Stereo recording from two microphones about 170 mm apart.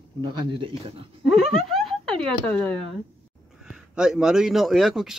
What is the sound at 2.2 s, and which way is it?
Speech, 5° left (ahead or behind).